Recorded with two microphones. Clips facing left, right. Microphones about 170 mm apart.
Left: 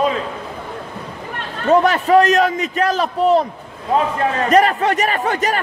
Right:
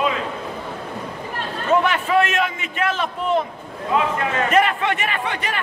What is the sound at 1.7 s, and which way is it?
A man's voice, 40° left (ahead or behind).